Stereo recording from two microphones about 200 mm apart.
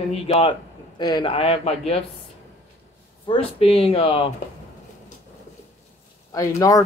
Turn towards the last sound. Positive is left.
turn(degrees=15)  # may be behind; listen again after turning